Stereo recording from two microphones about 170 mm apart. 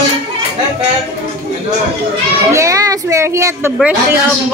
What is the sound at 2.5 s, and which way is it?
A child's voice, 20° right (ahead or behind).